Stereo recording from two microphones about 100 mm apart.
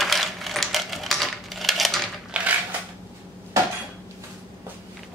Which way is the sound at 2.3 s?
10° right (ahead or behind).